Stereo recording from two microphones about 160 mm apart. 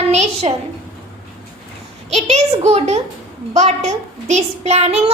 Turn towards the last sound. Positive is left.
turn(degrees=-40)  # may be behind; listen again after turning